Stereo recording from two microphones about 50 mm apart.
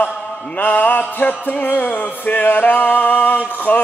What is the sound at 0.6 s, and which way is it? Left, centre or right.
Music, left.